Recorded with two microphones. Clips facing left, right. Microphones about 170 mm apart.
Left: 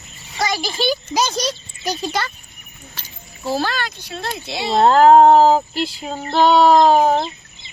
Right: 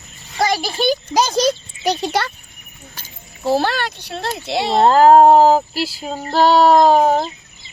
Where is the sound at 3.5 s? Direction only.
65° right (ahead or behind).